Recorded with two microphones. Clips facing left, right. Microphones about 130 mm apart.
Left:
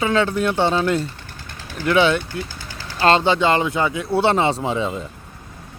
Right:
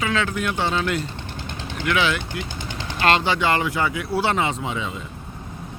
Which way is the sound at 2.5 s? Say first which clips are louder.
Right 4 dB; 20° right (ahead or behind).